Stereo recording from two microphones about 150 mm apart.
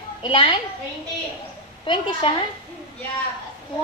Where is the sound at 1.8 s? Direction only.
35° left (ahead or behind).